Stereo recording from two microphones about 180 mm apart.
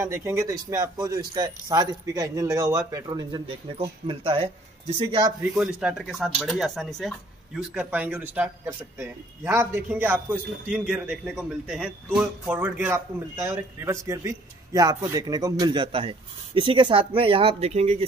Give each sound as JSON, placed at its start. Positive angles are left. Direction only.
{"t": 0.0, "sound": "a man's voice", "side_deg": -15}
{"t": 5.4, "sound": "a man's voice", "side_deg": -5}